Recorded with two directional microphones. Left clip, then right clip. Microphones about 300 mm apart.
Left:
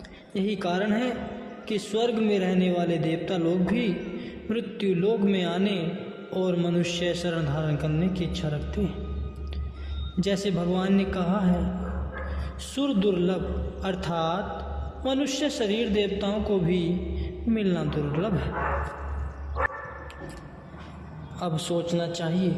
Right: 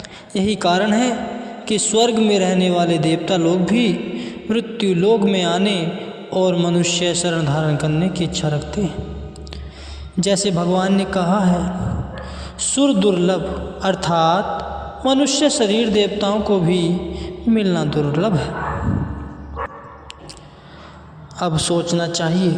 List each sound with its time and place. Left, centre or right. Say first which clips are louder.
0.3 s a man's voice: right 10 dB; right
10.2 s a man's voice: right 9 dB; right
21.3 s a man's voice: right 9 dB; right